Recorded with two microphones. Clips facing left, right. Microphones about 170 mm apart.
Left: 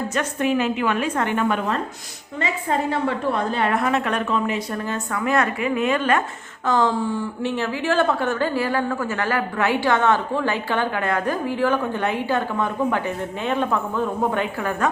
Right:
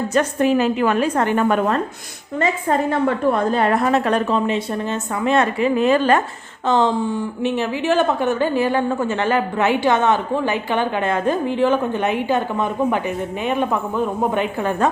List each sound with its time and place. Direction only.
0.1 s a woman's voice: 35° right (ahead or behind)
6.7 s a woman's voice: 20° right (ahead or behind)